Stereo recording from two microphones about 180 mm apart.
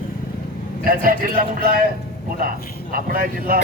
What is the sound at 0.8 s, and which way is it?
Speech, 55° right (ahead or behind).